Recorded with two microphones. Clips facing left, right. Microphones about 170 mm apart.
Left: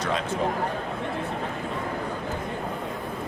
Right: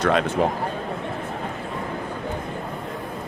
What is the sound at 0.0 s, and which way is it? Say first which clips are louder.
Speech: right 7 dB; 65° right (ahead or behind).